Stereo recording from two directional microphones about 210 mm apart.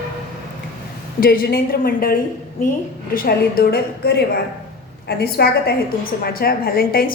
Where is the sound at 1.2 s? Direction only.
45° left (ahead or behind).